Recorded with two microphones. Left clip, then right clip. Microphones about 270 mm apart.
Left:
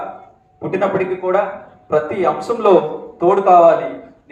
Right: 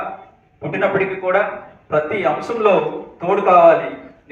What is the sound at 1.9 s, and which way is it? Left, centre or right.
A man's voice, left.